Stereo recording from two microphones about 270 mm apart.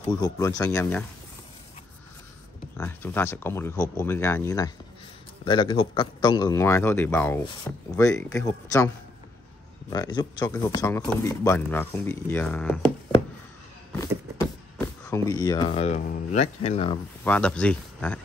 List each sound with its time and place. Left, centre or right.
0.0 s speech: centre
2.8 s speech: centre
15.0 s speech: centre
17.2 s speech: centre